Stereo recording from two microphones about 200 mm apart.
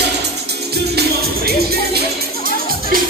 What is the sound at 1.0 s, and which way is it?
Music, 55° right (ahead or behind).